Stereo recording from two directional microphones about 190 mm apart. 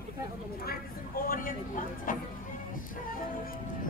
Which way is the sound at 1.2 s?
50° left (ahead or behind).